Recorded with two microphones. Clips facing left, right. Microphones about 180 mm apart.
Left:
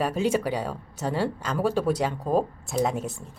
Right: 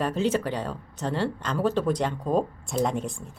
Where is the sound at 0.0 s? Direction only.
10° left (ahead or behind).